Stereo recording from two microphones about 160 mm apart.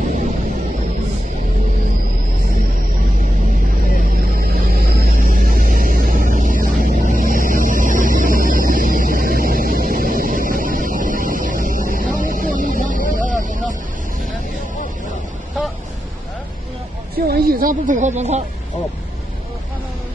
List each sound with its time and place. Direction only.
4.2 s music: 65° right (ahead or behind)
6.8 s vehicle: 50° right (ahead or behind)
17.3 s snake: 60° right (ahead or behind); by 18.4 s 45° right (ahead or behind)